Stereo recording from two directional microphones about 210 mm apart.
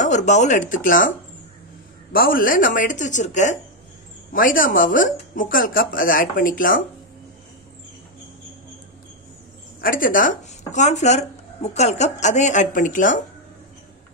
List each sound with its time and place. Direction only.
0.0 s speech: 35° left (ahead or behind)
2.1 s speech: 40° left (ahead or behind)
9.8 s speech: 40° left (ahead or behind)